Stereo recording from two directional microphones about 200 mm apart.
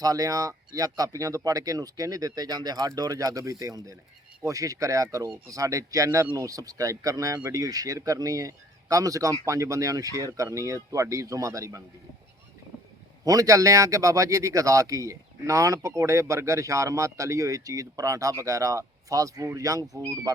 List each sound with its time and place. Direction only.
0.0 s a man's voice: 15° right (ahead or behind)
13.2 s a man's voice: 15° right (ahead or behind)